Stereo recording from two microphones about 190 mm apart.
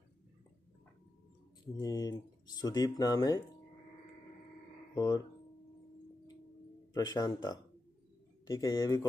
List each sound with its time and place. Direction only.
1.8 s speech: 20° left (ahead or behind)
4.9 s speech: 20° left (ahead or behind)
6.9 s speech: 20° left (ahead or behind)